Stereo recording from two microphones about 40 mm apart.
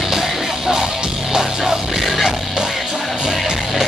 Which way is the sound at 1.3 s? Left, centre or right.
Centre.